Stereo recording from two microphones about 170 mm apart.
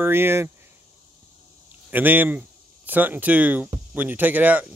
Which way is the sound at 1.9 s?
10° right (ahead or behind).